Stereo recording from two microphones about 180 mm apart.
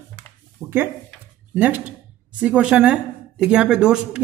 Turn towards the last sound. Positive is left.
turn(degrees=-5)  # may be behind; listen again after turning